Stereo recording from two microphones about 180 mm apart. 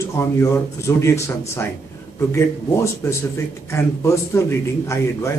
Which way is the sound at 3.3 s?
15° left (ahead or behind).